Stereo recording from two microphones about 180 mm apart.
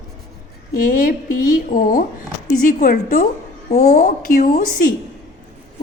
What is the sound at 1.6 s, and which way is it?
A woman's voice, 50° left (ahead or behind).